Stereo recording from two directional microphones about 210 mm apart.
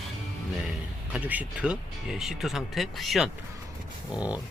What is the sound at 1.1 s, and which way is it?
Speech, 5° right (ahead or behind).